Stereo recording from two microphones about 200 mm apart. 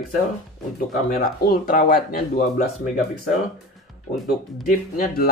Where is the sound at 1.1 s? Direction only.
45° left (ahead or behind).